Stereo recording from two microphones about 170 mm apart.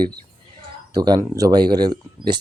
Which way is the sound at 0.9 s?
25° right (ahead or behind).